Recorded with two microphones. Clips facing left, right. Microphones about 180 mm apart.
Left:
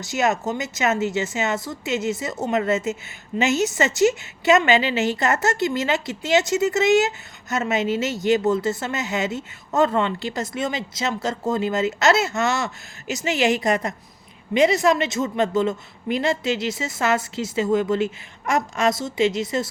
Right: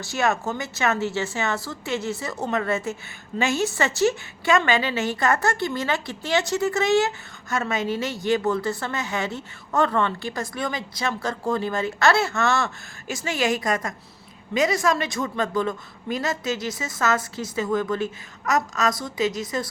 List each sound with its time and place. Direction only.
0.0 s a woman's voice: 20° left (ahead or behind)